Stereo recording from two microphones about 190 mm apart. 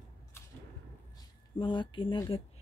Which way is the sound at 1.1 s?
25° left (ahead or behind).